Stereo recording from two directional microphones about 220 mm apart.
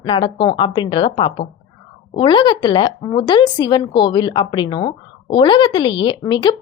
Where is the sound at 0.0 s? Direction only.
25° left (ahead or behind).